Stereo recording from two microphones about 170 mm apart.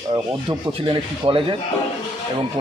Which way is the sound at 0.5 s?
30° right (ahead or behind).